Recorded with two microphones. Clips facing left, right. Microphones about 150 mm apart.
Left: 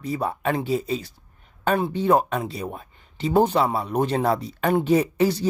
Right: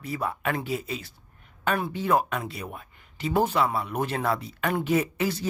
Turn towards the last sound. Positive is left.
turn(degrees=30)  # may be behind; listen again after turning